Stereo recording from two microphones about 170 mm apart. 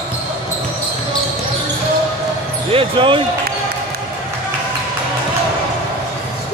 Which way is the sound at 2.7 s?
30° right (ahead or behind).